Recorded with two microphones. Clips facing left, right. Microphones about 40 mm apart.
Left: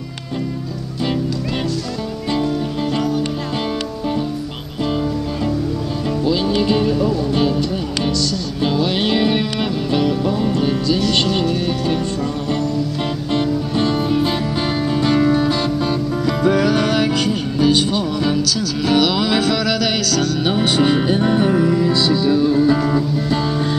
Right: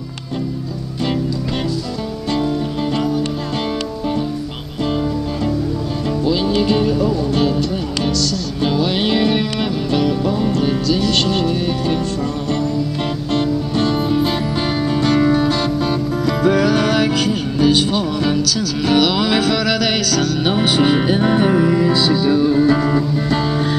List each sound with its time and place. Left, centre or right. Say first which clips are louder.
6.2 s music: right 1 dB; centre
13.3 s music: right 1 dB; centre